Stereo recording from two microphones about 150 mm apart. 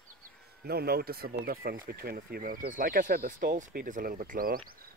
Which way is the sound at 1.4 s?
75° right (ahead or behind).